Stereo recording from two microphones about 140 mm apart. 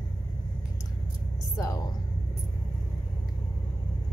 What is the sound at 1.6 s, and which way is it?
Speech, 25° left (ahead or behind).